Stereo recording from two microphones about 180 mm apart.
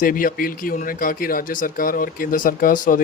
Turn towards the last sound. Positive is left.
turn(degrees=50)  # may be behind; listen again after turning